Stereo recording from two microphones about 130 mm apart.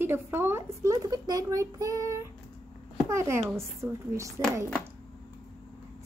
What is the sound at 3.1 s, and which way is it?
Child singing, 20° right (ahead or behind).